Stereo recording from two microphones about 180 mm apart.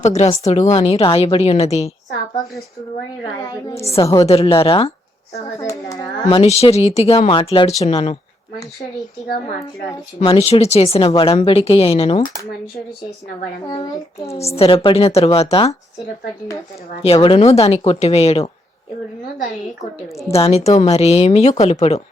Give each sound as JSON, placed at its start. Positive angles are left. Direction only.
{"t": 0.0, "sound": "a woman's voice", "side_deg": 40}
{"t": 3.8, "sound": "a woman's voice", "side_deg": 35}
{"t": 4.0, "sound": "a child's voice", "side_deg": 15}
{"t": 4.3, "sound": "a woman's voice", "side_deg": 35}
{"t": 5.5, "sound": "a child's voice", "side_deg": 15}
{"t": 6.2, "sound": "a woman's voice", "side_deg": 35}
{"t": 10.2, "sound": "a woman's voice", "side_deg": 35}
{"t": 13.7, "sound": "a child's voice", "side_deg": 20}
{"t": 14.3, "sound": "a woman's voice", "side_deg": 35}
{"t": 17.0, "sound": "a woman's voice", "side_deg": 30}
{"t": 20.3, "sound": "a woman's voice", "side_deg": 35}